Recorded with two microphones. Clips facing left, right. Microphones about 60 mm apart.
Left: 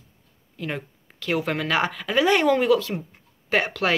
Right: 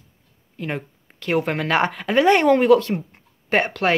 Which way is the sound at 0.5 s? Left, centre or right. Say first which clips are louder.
Right 3 dB; right.